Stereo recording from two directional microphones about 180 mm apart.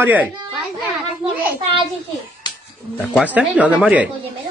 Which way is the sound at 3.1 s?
10° right (ahead or behind).